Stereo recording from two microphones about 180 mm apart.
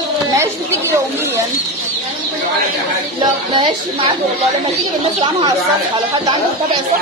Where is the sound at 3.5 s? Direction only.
25° right (ahead or behind).